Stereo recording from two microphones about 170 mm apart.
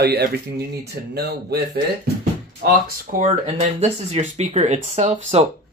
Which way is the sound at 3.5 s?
40° right (ahead or behind).